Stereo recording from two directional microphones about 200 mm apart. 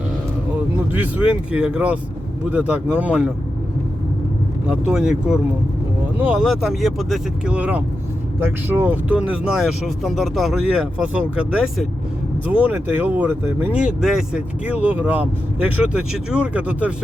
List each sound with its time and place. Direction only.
0.9 s speech: 5° right (ahead or behind)
4.7 s speech: 5° right (ahead or behind)